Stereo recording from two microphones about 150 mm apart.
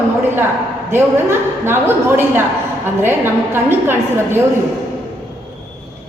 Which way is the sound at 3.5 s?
15° right (ahead or behind).